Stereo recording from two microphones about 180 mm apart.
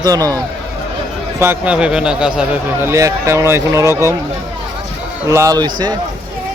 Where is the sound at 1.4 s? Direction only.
10° right (ahead or behind).